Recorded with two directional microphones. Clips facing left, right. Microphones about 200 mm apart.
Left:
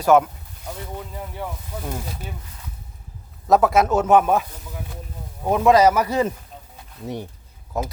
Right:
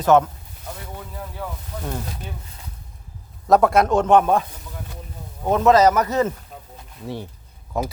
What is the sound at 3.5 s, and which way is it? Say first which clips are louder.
A man's voice: right 1 dB; centre (ahead or behind).